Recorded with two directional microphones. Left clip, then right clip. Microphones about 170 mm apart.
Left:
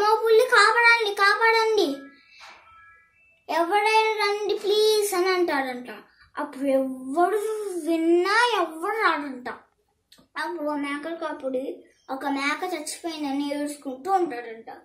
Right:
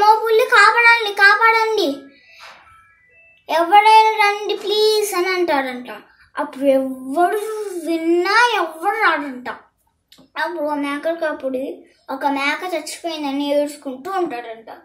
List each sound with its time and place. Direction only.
0.0 s a sound: 15° left (ahead or behind)
3.4 s child singing: 15° left (ahead or behind)
10.3 s a woman's voice: 15° left (ahead or behind)
12.2 s a woman's voice: 15° left (ahead or behind)